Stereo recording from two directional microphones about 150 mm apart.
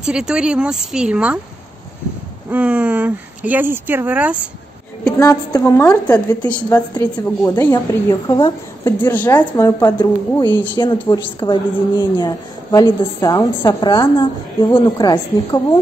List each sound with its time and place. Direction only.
0.0 s a woman's voice: 5° right (ahead or behind)
2.5 s speech: 10° right (ahead or behind)
5.1 s a woman's voice: 20° left (ahead or behind)
6.0 s a woman's voice: 10° left (ahead or behind); by 15.8 s 25° left (ahead or behind)